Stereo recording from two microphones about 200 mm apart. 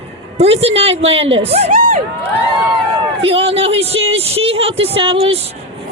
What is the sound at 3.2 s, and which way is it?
A woman's voice, 30° right (ahead or behind).